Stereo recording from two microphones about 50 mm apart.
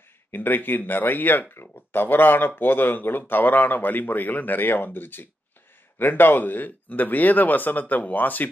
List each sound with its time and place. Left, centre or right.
0.3 s speech: left